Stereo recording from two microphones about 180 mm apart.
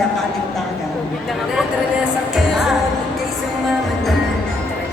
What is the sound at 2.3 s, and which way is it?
Music, centre (ahead or behind).